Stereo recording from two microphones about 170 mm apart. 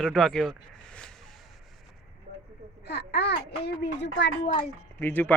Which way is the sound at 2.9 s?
80° left.